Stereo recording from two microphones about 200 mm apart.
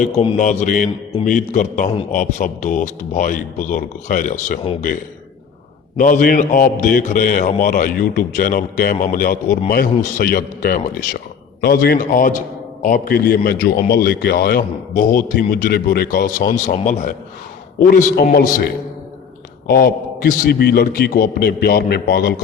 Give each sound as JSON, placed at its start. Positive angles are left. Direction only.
{"t": 0.2, "sound": "a man's voice", "side_deg": 35}
{"t": 6.0, "sound": "a man's voice", "side_deg": 45}